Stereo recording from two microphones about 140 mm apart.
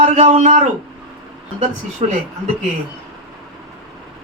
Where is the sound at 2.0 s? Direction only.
50° right (ahead or behind).